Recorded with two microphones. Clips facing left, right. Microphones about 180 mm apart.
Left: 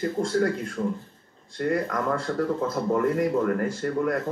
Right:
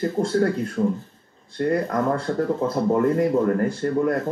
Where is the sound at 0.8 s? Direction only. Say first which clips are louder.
Right 5 dB; 30° right (ahead or behind).